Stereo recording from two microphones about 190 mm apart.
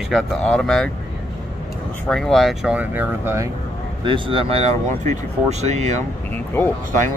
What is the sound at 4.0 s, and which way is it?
Speech, 25° right (ahead or behind).